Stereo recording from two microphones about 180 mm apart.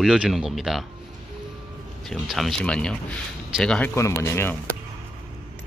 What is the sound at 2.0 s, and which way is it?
Speech, centre (ahead or behind).